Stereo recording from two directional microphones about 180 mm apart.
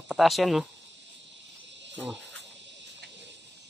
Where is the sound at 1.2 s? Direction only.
80° right.